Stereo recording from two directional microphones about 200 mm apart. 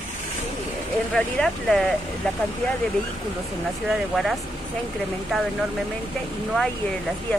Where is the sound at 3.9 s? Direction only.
Centre (ahead or behind).